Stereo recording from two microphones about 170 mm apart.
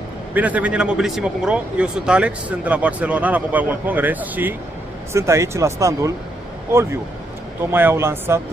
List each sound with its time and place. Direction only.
0.3 s a man's voice: 10° right (ahead or behind)